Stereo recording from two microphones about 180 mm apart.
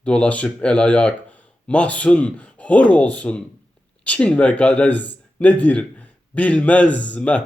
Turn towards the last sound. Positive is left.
turn(degrees=10)  # may be behind; listen again after turning